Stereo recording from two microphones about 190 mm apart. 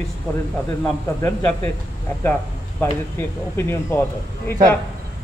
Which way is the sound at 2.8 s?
10° left (ahead or behind).